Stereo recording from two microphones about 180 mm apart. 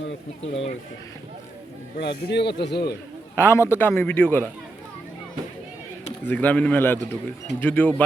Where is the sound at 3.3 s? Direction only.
15° left (ahead or behind).